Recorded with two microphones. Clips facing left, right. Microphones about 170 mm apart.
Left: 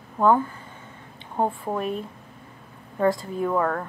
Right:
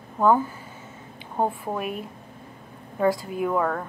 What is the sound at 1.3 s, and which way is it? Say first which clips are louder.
Speech: left 1 dB; centre (ahead or behind).